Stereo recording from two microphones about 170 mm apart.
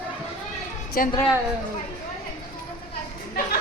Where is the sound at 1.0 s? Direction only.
55° left (ahead or behind).